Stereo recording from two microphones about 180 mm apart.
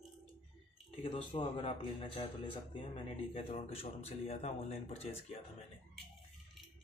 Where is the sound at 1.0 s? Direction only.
30° left (ahead or behind).